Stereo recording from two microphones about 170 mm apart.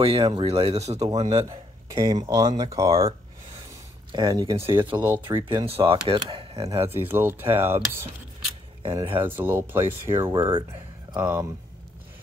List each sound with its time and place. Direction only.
0.2 s speech: 30° right (ahead or behind)
2.0 s speech: 20° right (ahead or behind)
4.1 s speech: 25° right (ahead or behind)
4.9 s speech: 10° right (ahead or behind)
5.5 s speech: 30° right (ahead or behind)
7.1 s speech: 15° right (ahead or behind)
8.8 s speech: 30° right (ahead or behind)
9.2 s speech: 10° right (ahead or behind)
10.3 s speech: 30° right (ahead or behind)
11.1 s speech: 10° right (ahead or behind)